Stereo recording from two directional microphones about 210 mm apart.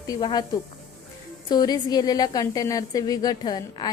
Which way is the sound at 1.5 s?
20° left (ahead or behind).